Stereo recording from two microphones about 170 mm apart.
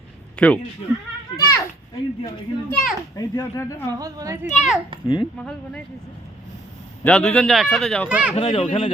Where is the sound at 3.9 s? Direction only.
20° right (ahead or behind).